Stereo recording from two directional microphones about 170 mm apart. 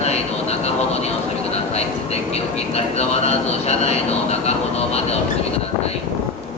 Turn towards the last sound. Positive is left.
turn(degrees=40)  # may be behind; listen again after turning